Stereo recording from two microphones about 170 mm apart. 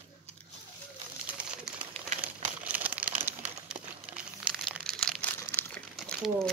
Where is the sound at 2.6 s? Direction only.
10° right (ahead or behind); by 5.8 s 10° left (ahead or behind).